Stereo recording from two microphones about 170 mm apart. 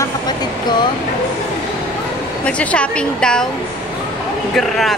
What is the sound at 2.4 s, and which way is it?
Speech, 5° left (ahead or behind).